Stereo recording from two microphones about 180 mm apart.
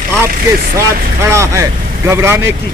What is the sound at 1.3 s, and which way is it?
Speech, 15° right (ahead or behind).